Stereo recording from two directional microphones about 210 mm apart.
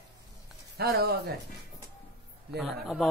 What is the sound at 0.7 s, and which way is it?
Speech, 50° right (ahead or behind).